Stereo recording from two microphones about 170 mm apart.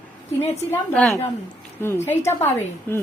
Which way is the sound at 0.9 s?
5° left (ahead or behind).